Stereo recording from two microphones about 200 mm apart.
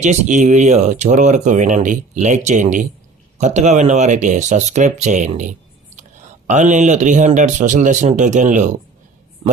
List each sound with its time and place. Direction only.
0.0 s speech: 35° right (ahead or behind)